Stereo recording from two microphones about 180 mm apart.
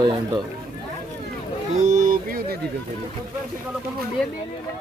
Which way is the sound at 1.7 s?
40° right (ahead or behind).